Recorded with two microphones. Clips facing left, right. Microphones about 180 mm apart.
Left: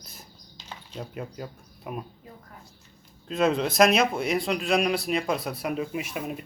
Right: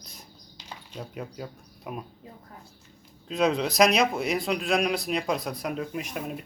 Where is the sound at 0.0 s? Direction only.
5° left (ahead or behind).